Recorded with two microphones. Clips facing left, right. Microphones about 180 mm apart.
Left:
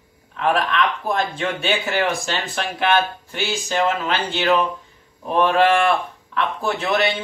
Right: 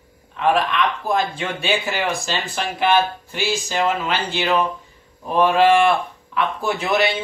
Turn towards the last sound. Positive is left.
turn(degrees=-5)  # may be behind; listen again after turning